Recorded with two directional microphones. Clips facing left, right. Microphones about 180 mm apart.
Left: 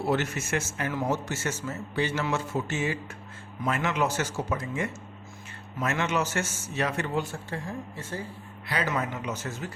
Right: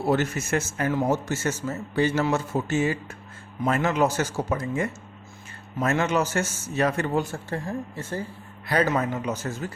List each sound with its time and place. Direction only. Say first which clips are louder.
0.1 s a man's voice: right 5 dB; 40° right (ahead or behind)